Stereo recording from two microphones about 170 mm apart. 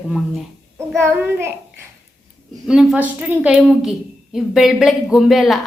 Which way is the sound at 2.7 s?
5° right (ahead or behind).